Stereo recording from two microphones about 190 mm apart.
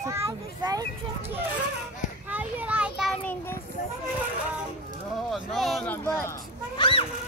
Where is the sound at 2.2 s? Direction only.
10° right (ahead or behind).